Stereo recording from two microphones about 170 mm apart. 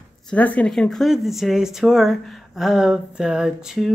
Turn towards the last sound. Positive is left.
turn(degrees=-5)  # may be behind; listen again after turning